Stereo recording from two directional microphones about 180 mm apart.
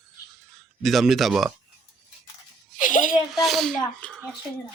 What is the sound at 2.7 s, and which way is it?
Speech, 45° left (ahead or behind).